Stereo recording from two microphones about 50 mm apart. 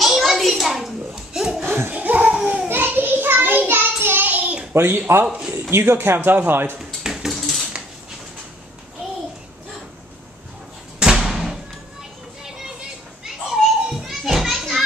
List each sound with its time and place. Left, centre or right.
0.0 s children playing: centre
1.6 s laughter: right
1.9 s a sound: right
2.7 s a sound: right
4.0 s child singing: right
4.7 s speech: right
5.2 s a man's voice: right
5.5 s speech: right
6.8 s a sound: centre
11.0 s thump: centre
13.2 s children playing: centre